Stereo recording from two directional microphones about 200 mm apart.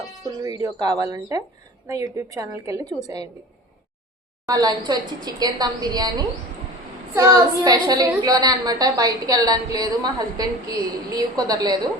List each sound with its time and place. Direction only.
0.4 s a woman's voice: 20° right (ahead or behind)
4.4 s a woman's voice: 20° right (ahead or behind)